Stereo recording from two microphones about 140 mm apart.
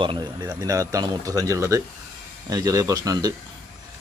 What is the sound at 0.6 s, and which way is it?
Speech, 25° right (ahead or behind).